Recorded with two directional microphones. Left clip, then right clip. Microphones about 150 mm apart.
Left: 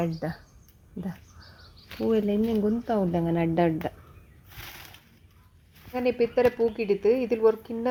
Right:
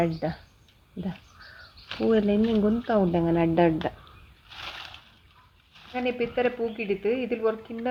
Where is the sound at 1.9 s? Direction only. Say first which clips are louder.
Right 2 dB; 25° left (ahead or behind).